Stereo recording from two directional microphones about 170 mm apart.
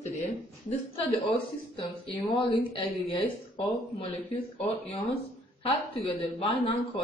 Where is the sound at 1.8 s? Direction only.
25° left (ahead or behind).